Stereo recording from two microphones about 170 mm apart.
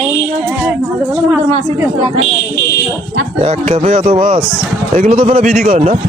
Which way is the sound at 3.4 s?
40° right (ahead or behind).